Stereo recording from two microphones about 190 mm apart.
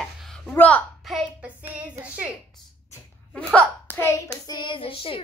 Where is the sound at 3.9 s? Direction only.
15° left (ahead or behind).